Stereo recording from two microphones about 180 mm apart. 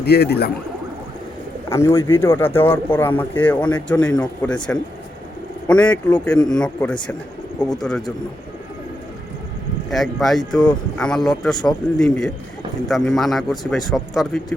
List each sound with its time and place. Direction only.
0.0 s speech: 65° left (ahead or behind)
1.7 s a man's voice: 15° left (ahead or behind)
9.9 s a man's voice: centre (ahead or behind)